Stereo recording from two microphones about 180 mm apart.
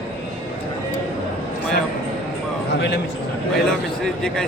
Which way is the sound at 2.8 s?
70° left (ahead or behind).